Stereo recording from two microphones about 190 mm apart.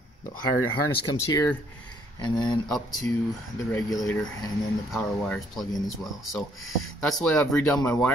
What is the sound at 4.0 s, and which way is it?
Speech, centre (ahead or behind).